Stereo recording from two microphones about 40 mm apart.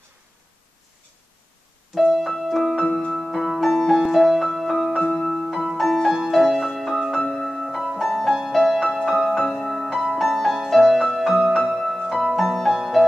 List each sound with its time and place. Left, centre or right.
2.0 s piano: centre
2.4 s music: centre